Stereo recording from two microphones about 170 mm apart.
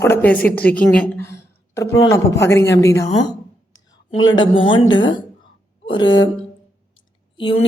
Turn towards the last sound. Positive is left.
turn(degrees=30)  # may be behind; listen again after turning